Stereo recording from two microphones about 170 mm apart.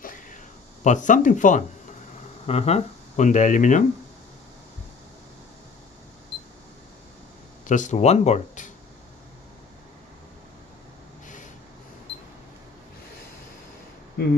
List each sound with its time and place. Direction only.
0.0 s a sound: 50° left (ahead or behind)
0.8 s speech: 45° left (ahead or behind)
2.4 s speech: 40° left (ahead or behind)
7.6 s speech: 45° left (ahead or behind)